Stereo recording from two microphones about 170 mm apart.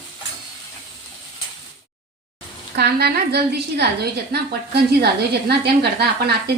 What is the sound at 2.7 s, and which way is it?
A woman's voice, 70° right (ahead or behind).